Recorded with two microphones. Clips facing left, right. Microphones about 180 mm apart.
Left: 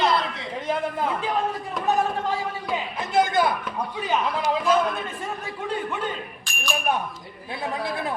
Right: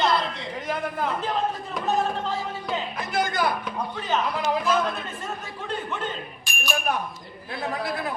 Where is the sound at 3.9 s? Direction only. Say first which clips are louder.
Left 2 dB; 10° left (ahead or behind).